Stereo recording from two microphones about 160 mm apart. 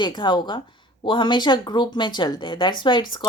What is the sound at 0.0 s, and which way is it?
Speech, 30° left (ahead or behind).